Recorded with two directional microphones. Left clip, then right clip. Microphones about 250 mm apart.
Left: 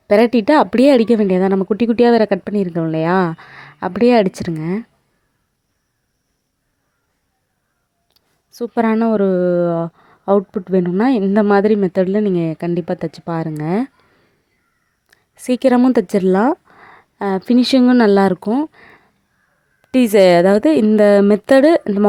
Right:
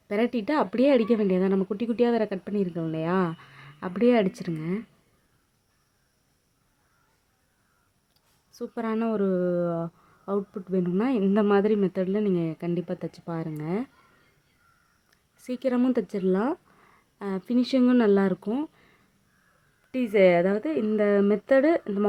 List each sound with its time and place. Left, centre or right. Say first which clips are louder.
0.1 s speech: left 14 dB; left
8.1 s speech: left 11 dB; left
15.1 s speech: left 16 dB; left